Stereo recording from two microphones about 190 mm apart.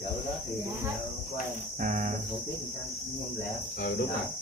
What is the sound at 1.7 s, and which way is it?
Speech, 40° right (ahead or behind).